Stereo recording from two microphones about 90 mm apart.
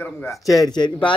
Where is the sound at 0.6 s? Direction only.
50° left (ahead or behind).